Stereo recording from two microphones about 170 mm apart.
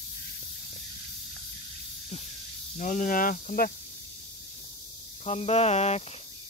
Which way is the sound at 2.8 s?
50° left (ahead or behind).